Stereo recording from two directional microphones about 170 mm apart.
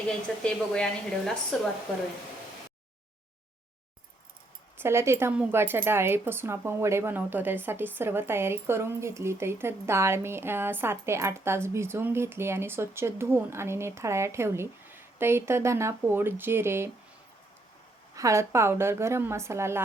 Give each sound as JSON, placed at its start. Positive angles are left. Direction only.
{"t": 0.1, "sound": "a woman's voice", "side_deg": 5}
{"t": 4.8, "sound": "speech", "side_deg": -15}
{"t": 18.1, "sound": "speech", "side_deg": -20}